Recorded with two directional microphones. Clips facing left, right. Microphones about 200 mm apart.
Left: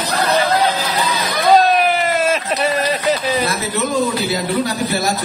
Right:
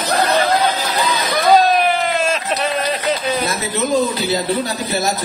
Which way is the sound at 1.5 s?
Centre (ahead or behind).